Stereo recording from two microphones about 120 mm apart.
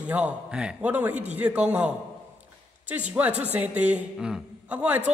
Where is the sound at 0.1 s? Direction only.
10° right (ahead or behind).